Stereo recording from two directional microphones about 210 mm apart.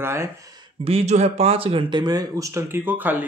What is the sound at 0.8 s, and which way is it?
Speech, 30° right (ahead or behind).